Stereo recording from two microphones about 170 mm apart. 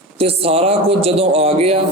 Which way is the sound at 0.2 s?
35° right (ahead or behind).